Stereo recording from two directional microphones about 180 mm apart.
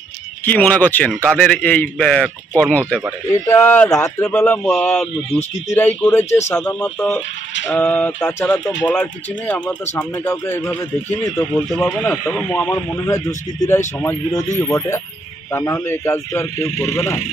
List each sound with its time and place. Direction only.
0.6 s speech: 10° left (ahead or behind)
12.7 s speech: 15° left (ahead or behind)